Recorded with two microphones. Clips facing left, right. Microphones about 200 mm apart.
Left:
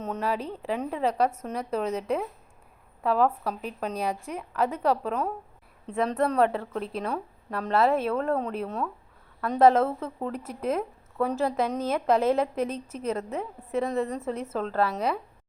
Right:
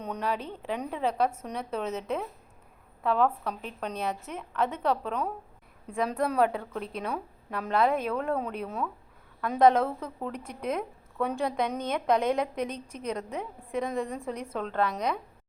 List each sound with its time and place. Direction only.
0.0 s a woman's voice: 5° left (ahead or behind)